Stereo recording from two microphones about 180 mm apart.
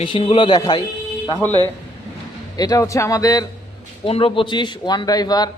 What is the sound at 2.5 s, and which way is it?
Speech, 20° left (ahead or behind).